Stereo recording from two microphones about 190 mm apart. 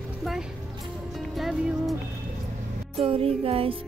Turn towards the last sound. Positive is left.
turn(degrees=-30)  # may be behind; listen again after turning